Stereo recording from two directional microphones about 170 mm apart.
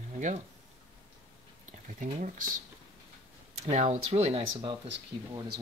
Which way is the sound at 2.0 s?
50° right (ahead or behind).